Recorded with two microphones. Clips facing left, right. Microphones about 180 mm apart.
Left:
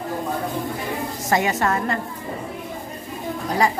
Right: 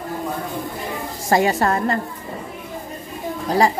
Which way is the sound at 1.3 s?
35° right (ahead or behind).